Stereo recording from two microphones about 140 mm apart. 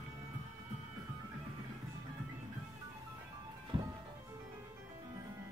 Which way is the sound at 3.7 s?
40° right (ahead or behind).